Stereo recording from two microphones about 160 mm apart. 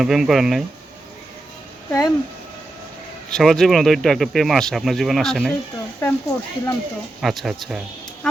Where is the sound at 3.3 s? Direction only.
5° left (ahead or behind).